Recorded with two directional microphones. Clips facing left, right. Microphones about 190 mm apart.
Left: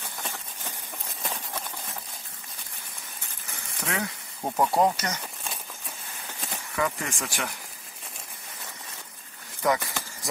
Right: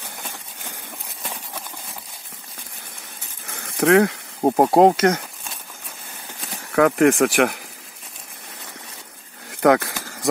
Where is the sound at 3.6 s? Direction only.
70° right (ahead or behind).